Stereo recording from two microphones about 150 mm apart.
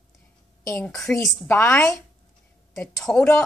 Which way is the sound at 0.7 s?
5° left (ahead or behind).